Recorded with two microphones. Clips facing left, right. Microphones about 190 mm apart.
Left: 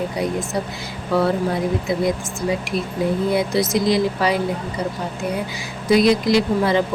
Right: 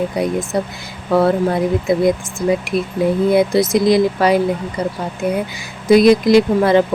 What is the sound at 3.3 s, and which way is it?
Speech, 50° right (ahead or behind).